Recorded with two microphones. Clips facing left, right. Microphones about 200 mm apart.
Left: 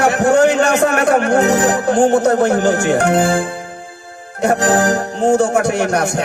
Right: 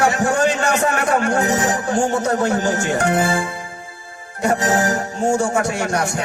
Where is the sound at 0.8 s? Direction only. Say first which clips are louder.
Left 5 dB; 65° left (ahead or behind).